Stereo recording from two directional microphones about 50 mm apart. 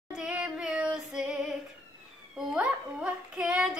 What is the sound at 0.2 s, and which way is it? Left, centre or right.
Female singing, centre.